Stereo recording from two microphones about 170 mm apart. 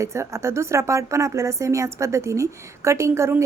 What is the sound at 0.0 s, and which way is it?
Speech, 15° right (ahead or behind).